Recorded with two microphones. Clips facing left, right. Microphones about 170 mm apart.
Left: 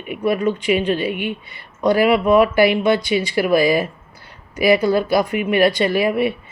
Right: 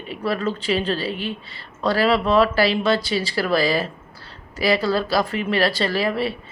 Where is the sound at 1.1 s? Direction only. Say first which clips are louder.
Left 4 dB; 30° right (ahead or behind).